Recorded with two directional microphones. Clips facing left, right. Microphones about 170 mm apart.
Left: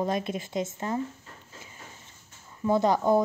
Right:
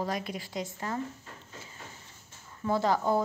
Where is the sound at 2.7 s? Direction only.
20° left (ahead or behind).